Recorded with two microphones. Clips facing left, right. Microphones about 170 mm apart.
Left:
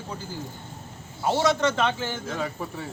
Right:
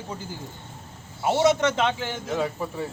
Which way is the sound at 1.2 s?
20° right (ahead or behind).